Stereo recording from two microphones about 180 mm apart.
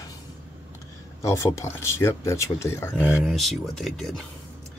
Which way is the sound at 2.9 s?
5° right (ahead or behind).